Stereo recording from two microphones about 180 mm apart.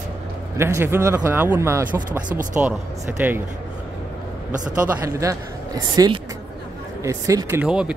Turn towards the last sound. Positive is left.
turn(degrees=-5)  # may be behind; listen again after turning